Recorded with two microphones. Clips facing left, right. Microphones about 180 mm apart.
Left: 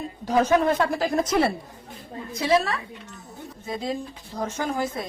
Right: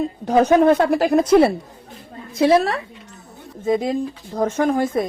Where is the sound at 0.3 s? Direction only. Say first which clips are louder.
Right 6 dB; 60° right (ahead or behind).